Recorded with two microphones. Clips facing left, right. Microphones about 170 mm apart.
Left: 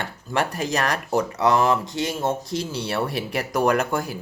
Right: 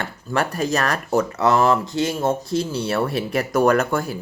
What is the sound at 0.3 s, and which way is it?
Speech, 20° left (ahead or behind).